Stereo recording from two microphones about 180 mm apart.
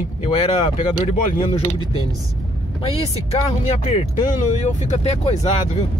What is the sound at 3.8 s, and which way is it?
Speech, 45° left (ahead or behind).